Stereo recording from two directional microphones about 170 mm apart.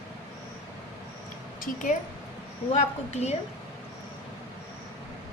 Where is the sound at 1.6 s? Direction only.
50° left (ahead or behind).